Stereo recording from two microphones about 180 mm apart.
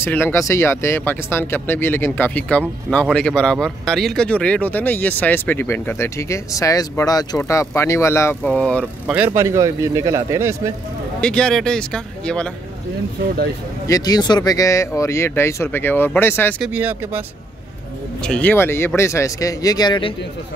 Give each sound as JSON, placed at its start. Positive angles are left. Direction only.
{"t": 0.0, "sound": "speech", "side_deg": 10}
{"t": 9.0, "sound": "a man's voice", "side_deg": -10}
{"t": 11.1, "sound": "speech", "side_deg": 5}
{"t": 13.8, "sound": "speech", "side_deg": 20}
{"t": 16.6, "sound": "a man's voice", "side_deg": -10}
{"t": 18.2, "sound": "speech", "side_deg": 5}